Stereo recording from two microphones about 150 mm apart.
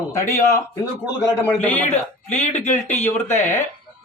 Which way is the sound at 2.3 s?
50° left (ahead or behind).